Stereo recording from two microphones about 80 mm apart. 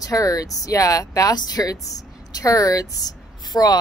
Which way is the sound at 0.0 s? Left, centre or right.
Left.